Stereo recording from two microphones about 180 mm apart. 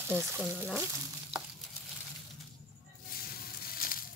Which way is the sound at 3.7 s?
55° left (ahead or behind).